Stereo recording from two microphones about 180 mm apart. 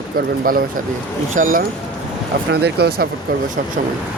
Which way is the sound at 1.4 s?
45° right (ahead or behind).